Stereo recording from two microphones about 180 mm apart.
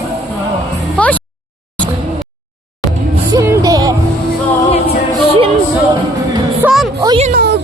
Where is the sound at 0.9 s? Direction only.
10° left (ahead or behind).